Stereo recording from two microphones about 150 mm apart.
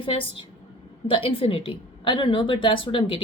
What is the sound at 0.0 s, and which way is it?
Speech, 35° left (ahead or behind).